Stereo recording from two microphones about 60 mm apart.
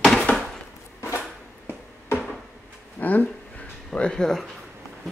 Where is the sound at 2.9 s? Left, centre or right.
Left.